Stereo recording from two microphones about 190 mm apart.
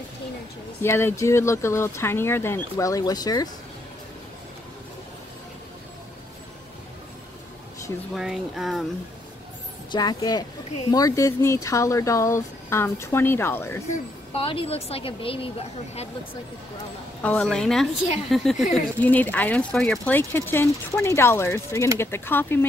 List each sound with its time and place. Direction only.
0.8 s speech: 15° left (ahead or behind)
8.1 s speech: centre (ahead or behind)
9.8 s a woman's voice: 20° left (ahead or behind)
14.3 s a woman's voice: 30° left (ahead or behind)
17.2 s speech: 5° left (ahead or behind)